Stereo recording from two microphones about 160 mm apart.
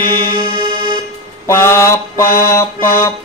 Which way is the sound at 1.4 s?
15° left (ahead or behind).